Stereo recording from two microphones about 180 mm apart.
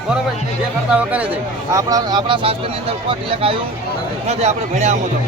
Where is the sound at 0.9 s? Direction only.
5° right (ahead or behind).